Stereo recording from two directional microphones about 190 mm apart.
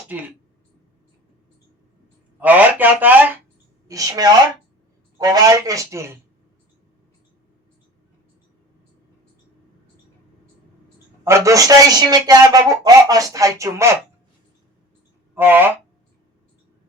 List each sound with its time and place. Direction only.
2.4 s speech: 10° right (ahead or behind)
11.2 s speech: 15° right (ahead or behind)
15.4 s speech: 10° right (ahead or behind)